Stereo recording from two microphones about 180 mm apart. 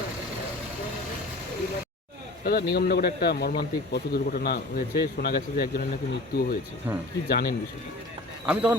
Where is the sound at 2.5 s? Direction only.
55° left (ahead or behind).